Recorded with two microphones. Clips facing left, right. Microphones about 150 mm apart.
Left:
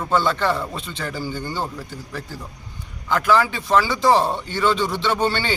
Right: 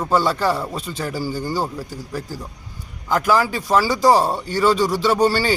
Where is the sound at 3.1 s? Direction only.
40° right (ahead or behind).